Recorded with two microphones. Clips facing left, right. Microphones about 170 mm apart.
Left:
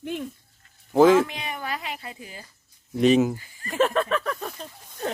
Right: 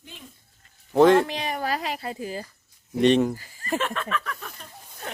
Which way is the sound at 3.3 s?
40° right (ahead or behind).